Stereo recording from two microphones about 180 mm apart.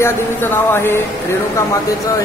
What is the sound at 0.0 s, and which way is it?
Speech, 15° left (ahead or behind).